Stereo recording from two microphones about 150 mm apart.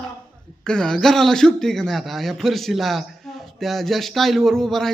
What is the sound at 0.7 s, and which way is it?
A man's voice, 5° left (ahead or behind).